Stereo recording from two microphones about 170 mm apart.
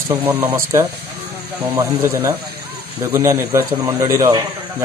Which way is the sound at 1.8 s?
15° right (ahead or behind).